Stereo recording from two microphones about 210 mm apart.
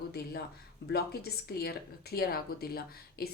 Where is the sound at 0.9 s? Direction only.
50° left (ahead or behind).